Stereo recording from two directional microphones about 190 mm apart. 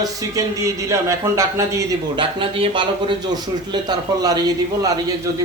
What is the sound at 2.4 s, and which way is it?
Speech, 30° right (ahead or behind).